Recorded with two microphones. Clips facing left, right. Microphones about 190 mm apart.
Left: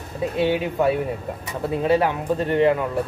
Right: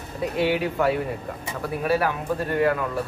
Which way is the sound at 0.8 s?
20° left (ahead or behind).